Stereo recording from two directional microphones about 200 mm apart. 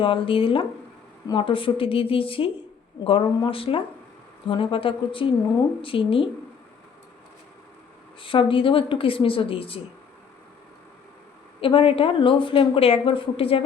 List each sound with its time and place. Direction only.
0.0 s a woman's voice: 25° left (ahead or behind)
8.2 s a woman's voice: 25° left (ahead or behind)
11.6 s a woman's voice: 25° left (ahead or behind)